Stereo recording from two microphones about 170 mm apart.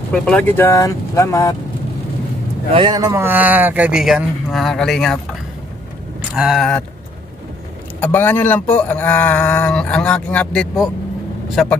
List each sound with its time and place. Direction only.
0.1 s speech: 5° left (ahead or behind)
2.7 s a man's voice: 25° right (ahead or behind)
3.1 s speech: 10° right (ahead or behind)
6.3 s speech: 5° right (ahead or behind)
8.0 s speech: 10° left (ahead or behind)